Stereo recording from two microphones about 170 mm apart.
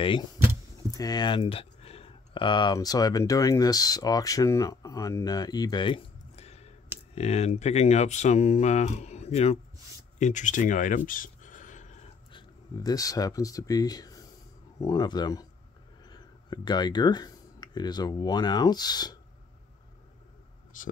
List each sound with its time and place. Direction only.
0.9 s speech: 25° left (ahead or behind); by 9.6 s 40° left (ahead or behind)
10.1 s a sound: 45° left (ahead or behind)
12.3 s speech: 25° left (ahead or behind)
20.7 s speech: 50° left (ahead or behind)